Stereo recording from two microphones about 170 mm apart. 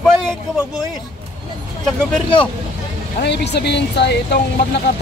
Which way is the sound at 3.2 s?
85° left.